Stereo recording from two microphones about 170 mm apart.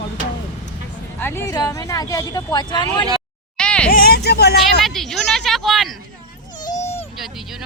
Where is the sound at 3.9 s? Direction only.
60° left (ahead or behind).